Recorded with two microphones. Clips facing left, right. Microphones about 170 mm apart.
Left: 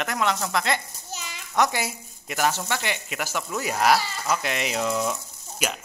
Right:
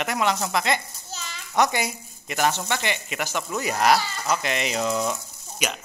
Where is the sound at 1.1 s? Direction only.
15° left (ahead or behind).